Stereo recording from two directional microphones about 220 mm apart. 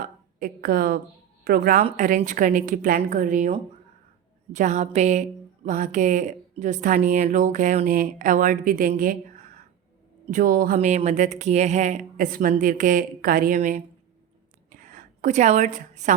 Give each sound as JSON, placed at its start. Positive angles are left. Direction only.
{"t": 0.0, "sound": "a woman's voice", "side_deg": -40}
{"t": 4.5, "sound": "speech", "side_deg": -35}
{"t": 14.7, "sound": "a sound", "side_deg": -35}